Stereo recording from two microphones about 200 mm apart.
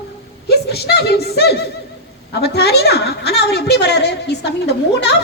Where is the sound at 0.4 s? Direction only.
55° left (ahead or behind).